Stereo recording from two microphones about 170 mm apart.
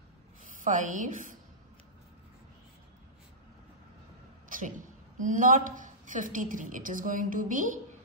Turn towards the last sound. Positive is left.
turn(degrees=-50)  # may be behind; listen again after turning